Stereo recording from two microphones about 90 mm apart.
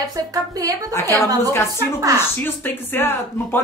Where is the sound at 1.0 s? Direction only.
30° left (ahead or behind).